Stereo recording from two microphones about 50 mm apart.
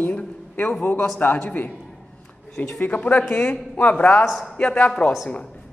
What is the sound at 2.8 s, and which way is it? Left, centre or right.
Speech, left.